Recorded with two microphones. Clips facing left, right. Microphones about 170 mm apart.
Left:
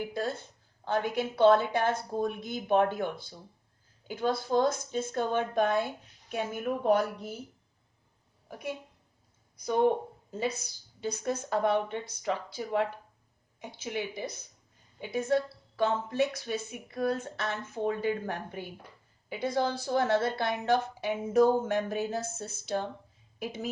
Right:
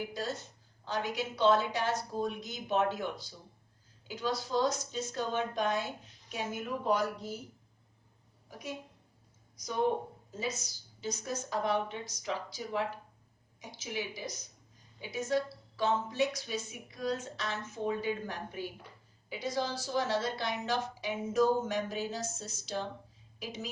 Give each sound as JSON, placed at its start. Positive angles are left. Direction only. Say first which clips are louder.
{"t": 0.1, "sound": "a woman's voice", "louder": "left 4 dB", "side_deg": 55}
{"t": 8.4, "sound": "a woman's voice", "louder": "left 6 dB", "side_deg": 60}
{"t": 10.3, "sound": "a woman's voice", "louder": "left 5 dB", "side_deg": 60}